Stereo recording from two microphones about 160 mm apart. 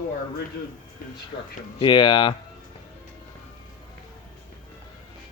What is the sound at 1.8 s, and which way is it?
Speech, 30° left (ahead or behind).